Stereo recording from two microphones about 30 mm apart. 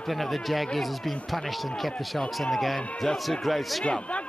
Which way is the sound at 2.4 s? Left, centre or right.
Centre.